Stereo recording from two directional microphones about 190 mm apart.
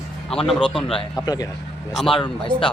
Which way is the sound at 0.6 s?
25° left (ahead or behind).